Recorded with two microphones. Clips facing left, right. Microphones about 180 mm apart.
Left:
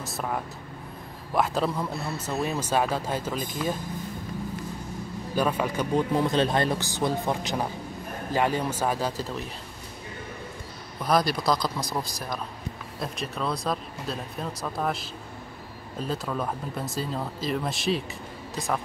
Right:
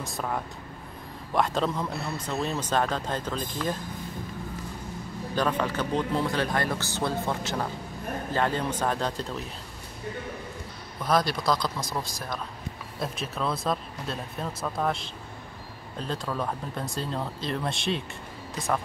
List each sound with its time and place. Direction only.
0.0 s speech: 5° left (ahead or behind)
5.3 s speech: 10° left (ahead or behind)
11.1 s speech: centre (ahead or behind)